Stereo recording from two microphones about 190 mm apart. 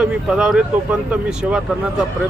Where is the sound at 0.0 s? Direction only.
5° right (ahead or behind).